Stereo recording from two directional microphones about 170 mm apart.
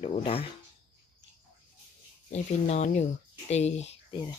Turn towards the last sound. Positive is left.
turn(degrees=40)  # may be behind; listen again after turning